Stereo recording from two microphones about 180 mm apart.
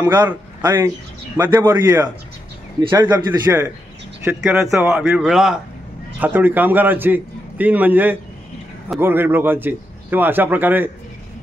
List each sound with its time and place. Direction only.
0.0 s a man's voice: 25° right (ahead or behind)
2.9 s a man's voice: 20° right (ahead or behind)
4.4 s a man's voice: 5° right (ahead or behind)